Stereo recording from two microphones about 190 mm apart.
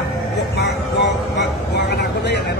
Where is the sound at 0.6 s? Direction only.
65° left (ahead or behind).